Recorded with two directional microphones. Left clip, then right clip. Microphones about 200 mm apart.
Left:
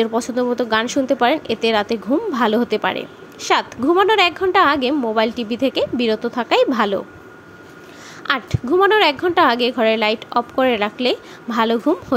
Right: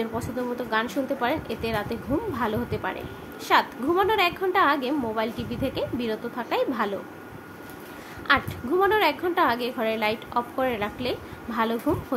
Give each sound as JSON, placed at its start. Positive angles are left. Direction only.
{"t": 0.0, "sound": "a woman's voice", "side_deg": 35}
{"t": 8.3, "sound": "a woman's voice", "side_deg": 35}